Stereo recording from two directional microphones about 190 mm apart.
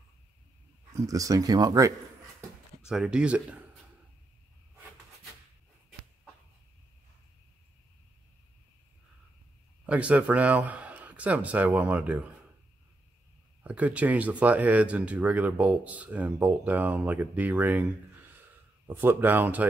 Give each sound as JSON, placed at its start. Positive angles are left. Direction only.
{"t": 0.9, "sound": "speech", "side_deg": -15}
{"t": 2.9, "sound": "speech", "side_deg": -5}
{"t": 9.8, "sound": "speech", "side_deg": -5}
{"t": 13.7, "sound": "speech", "side_deg": -5}
{"t": 18.9, "sound": "speech", "side_deg": -10}